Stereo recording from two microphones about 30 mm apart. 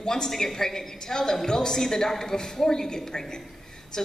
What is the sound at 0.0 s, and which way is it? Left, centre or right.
A woman's voice, centre.